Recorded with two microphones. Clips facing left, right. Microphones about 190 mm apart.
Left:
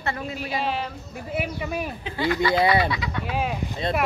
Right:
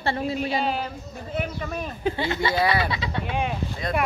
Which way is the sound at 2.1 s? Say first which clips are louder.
Left 7 dB; 25° right (ahead or behind).